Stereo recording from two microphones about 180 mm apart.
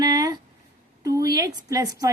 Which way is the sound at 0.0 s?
20° right (ahead or behind).